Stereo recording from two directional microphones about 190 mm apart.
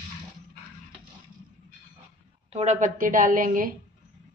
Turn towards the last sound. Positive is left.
turn(degrees=-45)  # may be behind; listen again after turning